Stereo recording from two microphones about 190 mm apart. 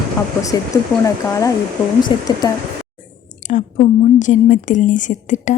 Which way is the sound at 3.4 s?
40° left (ahead or behind).